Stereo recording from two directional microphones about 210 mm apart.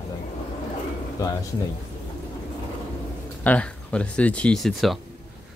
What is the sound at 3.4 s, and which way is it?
Speech, 5° left (ahead or behind).